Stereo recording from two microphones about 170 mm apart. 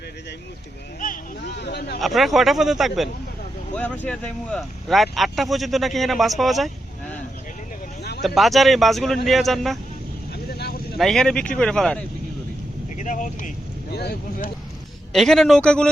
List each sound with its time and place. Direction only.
1.6 s speech: 75° left (ahead or behind)
2.0 s speech: centre (ahead or behind)
3.8 s speech: 10° left (ahead or behind)
8.4 s speech: centre (ahead or behind)
10.3 s vehicle: 70° left (ahead or behind)
10.9 s speech: centre (ahead or behind)
13.0 s speech: 45° left (ahead or behind)
13.9 s speech: 70° left (ahead or behind)
15.1 s speech: centre (ahead or behind)